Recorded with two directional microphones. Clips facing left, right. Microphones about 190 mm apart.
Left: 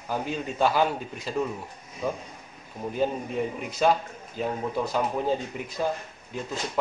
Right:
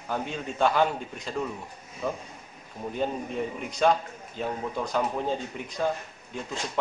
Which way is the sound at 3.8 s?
5° left (ahead or behind).